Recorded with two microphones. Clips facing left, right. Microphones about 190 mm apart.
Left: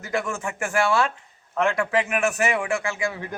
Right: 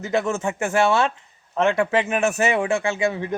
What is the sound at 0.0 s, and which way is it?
A man's voice, 25° right (ahead or behind).